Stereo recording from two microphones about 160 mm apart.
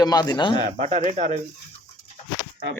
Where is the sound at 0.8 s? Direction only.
45° right (ahead or behind).